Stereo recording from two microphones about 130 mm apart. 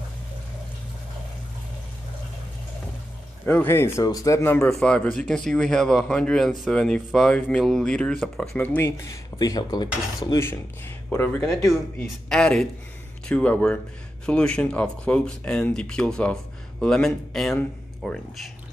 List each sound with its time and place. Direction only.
3.4 s speech: 15° left (ahead or behind)
4.6 s speech: 5° left (ahead or behind)
8.5 s speech: 15° left (ahead or behind); by 9.8 s 30° left (ahead or behind)
10.3 s speech: 20° left (ahead or behind)
12.3 s speech: 5° left (ahead or behind)